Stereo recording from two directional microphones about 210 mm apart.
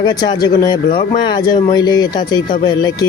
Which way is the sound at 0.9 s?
40° left (ahead or behind).